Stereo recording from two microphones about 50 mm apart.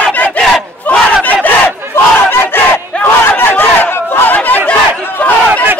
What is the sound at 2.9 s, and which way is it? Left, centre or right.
Battle cry, left.